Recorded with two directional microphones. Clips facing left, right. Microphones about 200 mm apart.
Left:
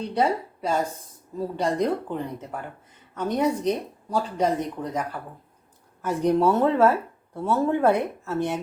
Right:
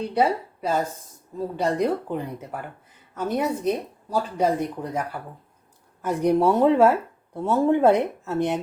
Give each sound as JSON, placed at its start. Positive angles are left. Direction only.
{"t": 0.0, "sound": "a woman's voice", "side_deg": -5}